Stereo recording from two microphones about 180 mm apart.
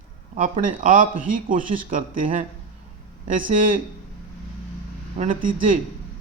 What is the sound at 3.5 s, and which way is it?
Speech, 45° right (ahead or behind).